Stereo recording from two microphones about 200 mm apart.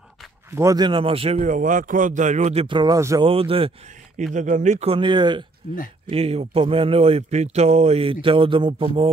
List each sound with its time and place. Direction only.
0.6 s speech: 20° right (ahead or behind)
3.3 s speech: 30° right (ahead or behind)
4.2 s speech: 40° right (ahead or behind)